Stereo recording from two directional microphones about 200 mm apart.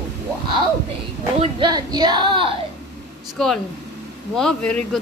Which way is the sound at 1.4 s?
20° right (ahead or behind).